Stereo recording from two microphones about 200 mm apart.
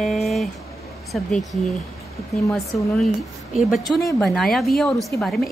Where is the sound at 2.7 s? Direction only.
Centre (ahead or behind).